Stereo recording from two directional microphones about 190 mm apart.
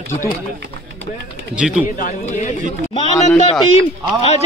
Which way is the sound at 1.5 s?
5° right (ahead or behind).